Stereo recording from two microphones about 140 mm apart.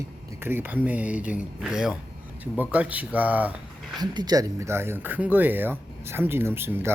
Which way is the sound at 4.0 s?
30° right (ahead or behind).